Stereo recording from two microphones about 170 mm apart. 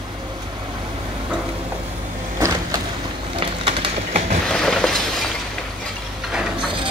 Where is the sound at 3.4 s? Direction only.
40° right (ahead or behind).